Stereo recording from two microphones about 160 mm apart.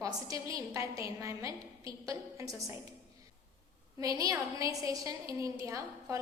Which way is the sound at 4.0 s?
20° right (ahead or behind).